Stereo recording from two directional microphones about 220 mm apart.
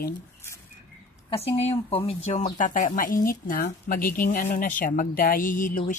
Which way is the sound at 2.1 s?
30° left (ahead or behind).